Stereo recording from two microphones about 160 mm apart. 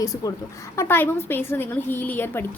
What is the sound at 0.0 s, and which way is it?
A woman's voice, 20° left (ahead or behind).